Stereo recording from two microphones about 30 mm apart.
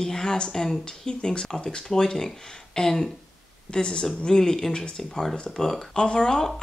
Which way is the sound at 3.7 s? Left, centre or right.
Left.